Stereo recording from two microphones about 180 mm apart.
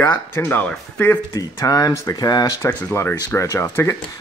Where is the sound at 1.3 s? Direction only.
20° left (ahead or behind).